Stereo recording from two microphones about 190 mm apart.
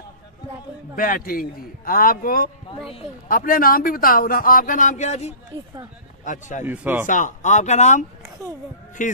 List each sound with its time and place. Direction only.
0.9 s a man's voice: 50° left (ahead or behind)
6.6 s speech: 10° right (ahead or behind)
7.1 s speech: 40° left (ahead or behind)